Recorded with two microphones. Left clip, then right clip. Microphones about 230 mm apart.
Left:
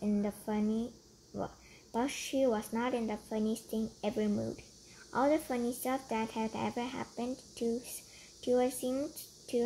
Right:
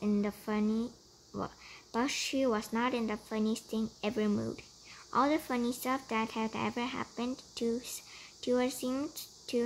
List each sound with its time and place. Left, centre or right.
0.2 s a woman's voice: right